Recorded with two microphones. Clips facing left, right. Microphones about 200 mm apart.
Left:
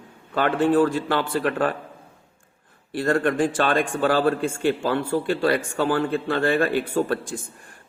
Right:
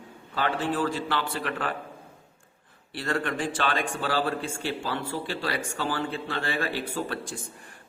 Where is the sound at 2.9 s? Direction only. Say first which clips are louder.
Left 8 dB; 45° left (ahead or behind).